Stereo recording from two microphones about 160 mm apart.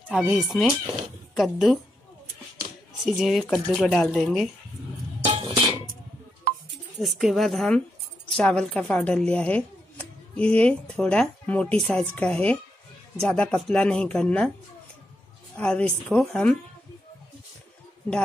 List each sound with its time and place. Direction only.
0.1 s speech: 5° right (ahead or behind)
3.1 s speech: centre (ahead or behind)
5.2 s music: 35° right (ahead or behind)
7.0 s speech: centre (ahead or behind)
15.5 s speech: 5° left (ahead or behind)